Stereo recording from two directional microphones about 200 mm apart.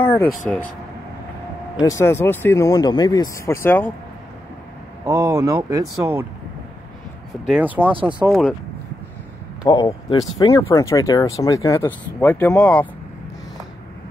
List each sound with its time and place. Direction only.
0.0 s speech: 10° left (ahead or behind)
1.8 s speech: 15° left (ahead or behind)
5.0 s speech: 15° right (ahead or behind)
7.4 s speech: 5° right (ahead or behind)
7.9 s speech: 25° right (ahead or behind)
8.2 s speech: 5° right (ahead or behind)
9.7 s speech: 20° left (ahead or behind)